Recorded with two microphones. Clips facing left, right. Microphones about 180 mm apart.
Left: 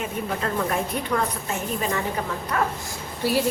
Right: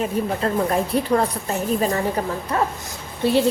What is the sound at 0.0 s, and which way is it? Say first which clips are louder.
A woman's voice: right 5 dB; 35° right (ahead or behind).